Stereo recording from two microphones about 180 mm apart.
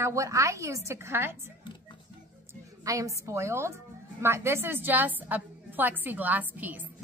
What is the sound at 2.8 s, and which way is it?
A woman's voice, 20° right (ahead or behind).